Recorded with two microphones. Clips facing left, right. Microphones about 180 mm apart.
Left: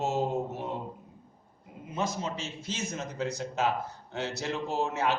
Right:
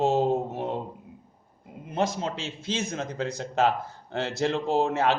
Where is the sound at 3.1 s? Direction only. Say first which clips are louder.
Right 5 dB; 90° right.